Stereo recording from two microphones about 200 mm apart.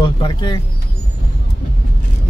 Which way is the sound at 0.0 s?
25° left (ahead or behind).